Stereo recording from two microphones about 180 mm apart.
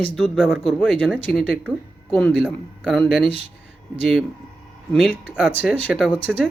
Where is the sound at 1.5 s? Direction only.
5° right (ahead or behind).